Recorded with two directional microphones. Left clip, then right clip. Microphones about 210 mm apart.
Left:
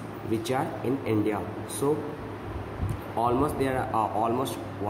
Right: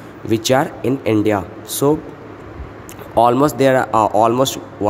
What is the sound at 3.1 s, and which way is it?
Speech, 45° right (ahead or behind).